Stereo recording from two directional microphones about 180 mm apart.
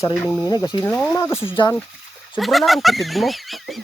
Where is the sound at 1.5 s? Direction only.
25° left (ahead or behind).